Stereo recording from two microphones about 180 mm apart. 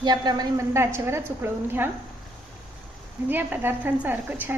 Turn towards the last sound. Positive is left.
turn(degrees=-10)  # may be behind; listen again after turning